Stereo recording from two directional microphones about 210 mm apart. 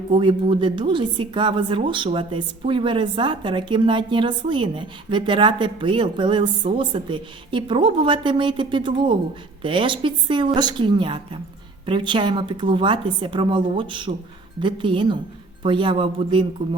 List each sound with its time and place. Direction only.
0.1 s a woman's voice: 25° right (ahead or behind)